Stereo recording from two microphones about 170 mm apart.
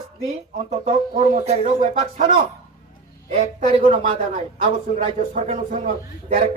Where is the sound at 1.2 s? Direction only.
40° right (ahead or behind).